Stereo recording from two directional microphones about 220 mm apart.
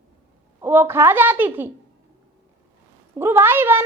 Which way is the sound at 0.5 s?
10° right (ahead or behind).